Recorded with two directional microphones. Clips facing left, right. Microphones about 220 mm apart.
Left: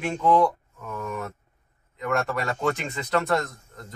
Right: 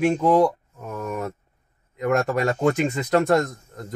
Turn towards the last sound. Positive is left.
turn(degrees=-45)  # may be behind; listen again after turning